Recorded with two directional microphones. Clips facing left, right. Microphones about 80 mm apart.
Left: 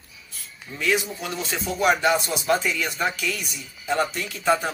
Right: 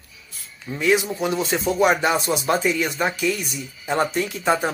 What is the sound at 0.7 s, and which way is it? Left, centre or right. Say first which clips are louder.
Speech: right 5 dB; right.